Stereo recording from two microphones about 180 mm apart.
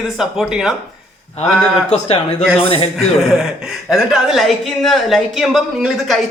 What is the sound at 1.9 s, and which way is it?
Speech, 35° left (ahead or behind).